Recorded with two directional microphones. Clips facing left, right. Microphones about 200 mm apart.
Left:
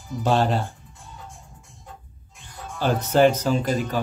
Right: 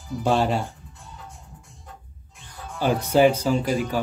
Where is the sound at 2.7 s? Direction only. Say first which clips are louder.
Even; 10° right (ahead or behind).